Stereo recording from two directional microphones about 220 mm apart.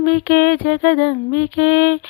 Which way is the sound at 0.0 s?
40° left (ahead or behind).